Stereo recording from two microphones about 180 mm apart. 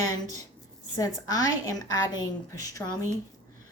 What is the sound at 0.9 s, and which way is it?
Speech, 20° left (ahead or behind).